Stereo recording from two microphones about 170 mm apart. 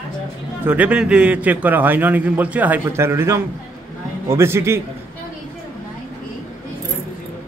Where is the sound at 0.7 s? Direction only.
10° right (ahead or behind).